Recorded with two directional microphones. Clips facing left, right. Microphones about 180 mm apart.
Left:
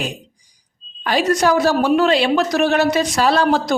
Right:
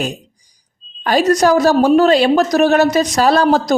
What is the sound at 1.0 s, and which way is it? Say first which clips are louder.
A woman's voice: right 4 dB; 40° right (ahead or behind).